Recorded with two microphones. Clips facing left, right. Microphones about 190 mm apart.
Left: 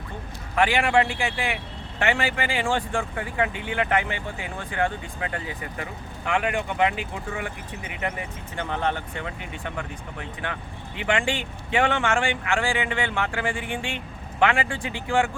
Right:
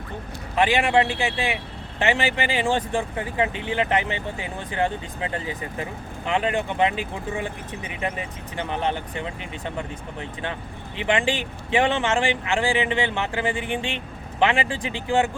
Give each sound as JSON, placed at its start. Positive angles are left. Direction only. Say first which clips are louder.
{"t": 0.5, "sound": "speech", "louder": "right 1 dB", "side_deg": -20}